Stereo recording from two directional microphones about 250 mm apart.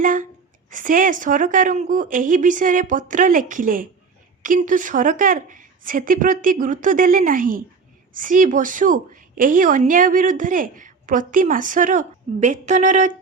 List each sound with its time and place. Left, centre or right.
0.0 s a woman's voice: right